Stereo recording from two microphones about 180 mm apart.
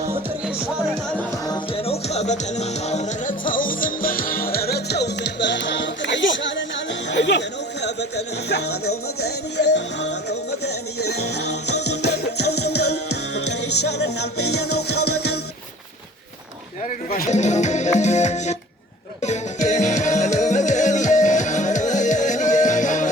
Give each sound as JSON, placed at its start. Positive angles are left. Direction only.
{"t": 1.5, "sound": "music", "side_deg": 35}
{"t": 7.1, "sound": "chatter", "side_deg": 75}
{"t": 9.2, "sound": "music", "side_deg": 70}
{"t": 11.9, "sound": "music", "side_deg": 70}
{"t": 14.0, "sound": "music", "side_deg": 70}
{"t": 17.1, "sound": "speech", "side_deg": 45}
{"t": 19.2, "sound": "music", "side_deg": 40}